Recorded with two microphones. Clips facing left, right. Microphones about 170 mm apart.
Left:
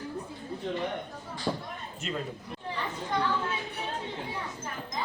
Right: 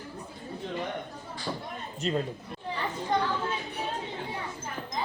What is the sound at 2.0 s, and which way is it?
Speech, 35° right (ahead or behind).